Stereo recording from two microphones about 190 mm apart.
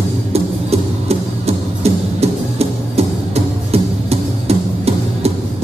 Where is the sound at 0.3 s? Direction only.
35° right (ahead or behind).